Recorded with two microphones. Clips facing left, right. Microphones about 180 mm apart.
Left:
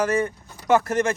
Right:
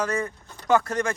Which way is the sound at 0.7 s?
20° left (ahead or behind).